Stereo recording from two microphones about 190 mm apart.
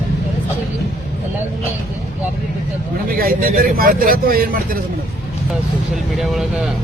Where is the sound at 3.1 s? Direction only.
50° right (ahead or behind).